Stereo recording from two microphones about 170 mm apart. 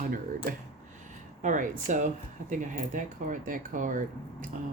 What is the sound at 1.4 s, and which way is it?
Speech, 45° right (ahead or behind).